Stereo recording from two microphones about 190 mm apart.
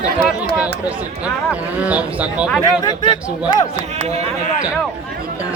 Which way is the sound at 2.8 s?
25° left (ahead or behind).